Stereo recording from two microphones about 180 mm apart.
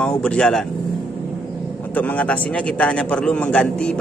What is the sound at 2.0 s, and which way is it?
Speech, 5° left (ahead or behind).